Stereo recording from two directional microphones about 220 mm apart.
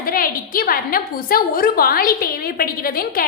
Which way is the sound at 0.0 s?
40° left (ahead or behind).